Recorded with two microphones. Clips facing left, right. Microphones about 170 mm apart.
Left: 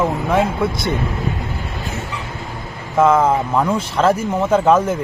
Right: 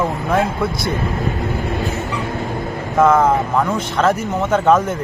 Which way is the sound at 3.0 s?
10° left (ahead or behind).